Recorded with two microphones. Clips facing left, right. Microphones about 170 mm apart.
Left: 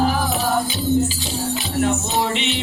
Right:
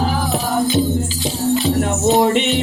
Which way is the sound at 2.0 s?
45° right (ahead or behind).